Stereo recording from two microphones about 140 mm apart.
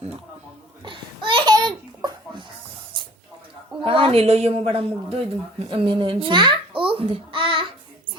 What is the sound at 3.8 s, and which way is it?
Speech, 40° right (ahead or behind).